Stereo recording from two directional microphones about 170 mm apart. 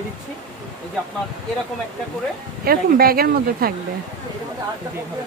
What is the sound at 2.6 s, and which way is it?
Speech, 60° right (ahead or behind).